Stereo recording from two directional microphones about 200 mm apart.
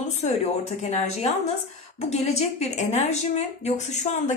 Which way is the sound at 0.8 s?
30° left (ahead or behind).